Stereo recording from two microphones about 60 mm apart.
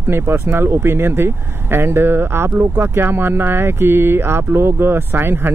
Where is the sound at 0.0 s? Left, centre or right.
Right.